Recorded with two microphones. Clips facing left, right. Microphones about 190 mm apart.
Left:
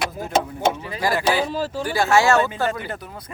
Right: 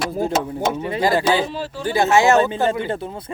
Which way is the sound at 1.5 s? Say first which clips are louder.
Left 3 dB; 40° left (ahead or behind).